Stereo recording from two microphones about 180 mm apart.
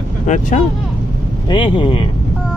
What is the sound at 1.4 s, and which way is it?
Speech, 25° left (ahead or behind).